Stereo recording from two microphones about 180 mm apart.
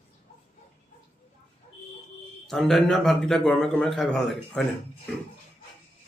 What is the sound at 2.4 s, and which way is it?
Speech, centre (ahead or behind).